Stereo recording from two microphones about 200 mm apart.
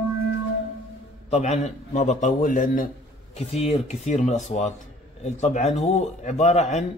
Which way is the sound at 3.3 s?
30° left (ahead or behind).